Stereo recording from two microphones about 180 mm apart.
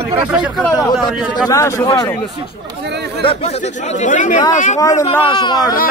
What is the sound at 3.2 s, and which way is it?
Speech, 30° left (ahead or behind).